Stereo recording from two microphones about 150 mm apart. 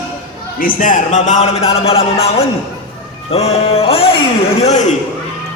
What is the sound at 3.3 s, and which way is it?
Music, 40° left (ahead or behind).